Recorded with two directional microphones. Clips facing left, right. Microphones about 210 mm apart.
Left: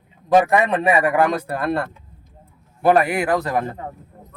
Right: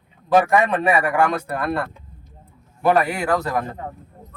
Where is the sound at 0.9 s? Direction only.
30° left (ahead or behind).